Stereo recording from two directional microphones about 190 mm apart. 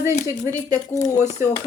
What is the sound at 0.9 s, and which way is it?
Speech, 15° left (ahead or behind).